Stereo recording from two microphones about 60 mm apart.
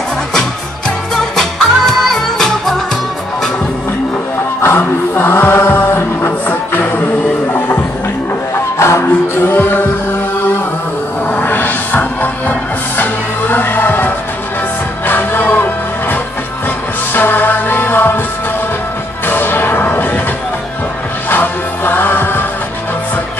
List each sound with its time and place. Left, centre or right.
0.3 s music: centre
4.6 s music: left
8.5 s music: left
11.3 s music: left
19.2 s whip: left
21.3 s music: left